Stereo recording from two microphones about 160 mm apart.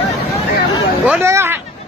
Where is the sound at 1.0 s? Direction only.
10° right (ahead or behind).